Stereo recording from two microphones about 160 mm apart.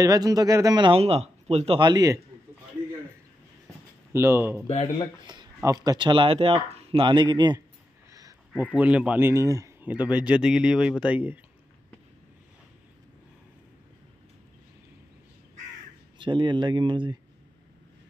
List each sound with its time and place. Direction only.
0.0 s speech: 25° right (ahead or behind); by 1.8 s 40° right (ahead or behind)
1.8 s speech: 25° right (ahead or behind)
4.1 s speech: 15° right (ahead or behind)
4.6 s speech: 40° left (ahead or behind)
5.2 s speech: 25° right (ahead or behind)
8.1 s a sound: 20° right (ahead or behind)
8.7 s speech: 10° right (ahead or behind)
9.8 s speech: 10° right (ahead or behind)
16.2 s speech: 30° right (ahead or behind)